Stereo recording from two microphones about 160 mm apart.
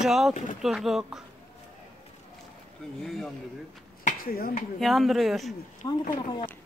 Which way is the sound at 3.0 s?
Centre (ahead or behind).